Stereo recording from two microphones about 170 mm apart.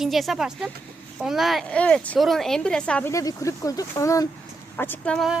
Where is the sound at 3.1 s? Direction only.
20° left (ahead or behind).